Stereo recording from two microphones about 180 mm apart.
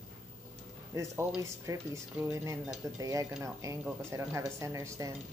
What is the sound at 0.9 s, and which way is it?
Speech, 15° right (ahead or behind).